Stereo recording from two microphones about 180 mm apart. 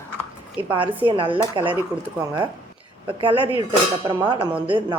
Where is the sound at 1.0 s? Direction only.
30° right (ahead or behind).